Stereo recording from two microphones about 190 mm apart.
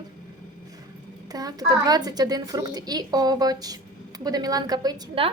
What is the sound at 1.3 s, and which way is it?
A woman's voice, 20° right (ahead or behind).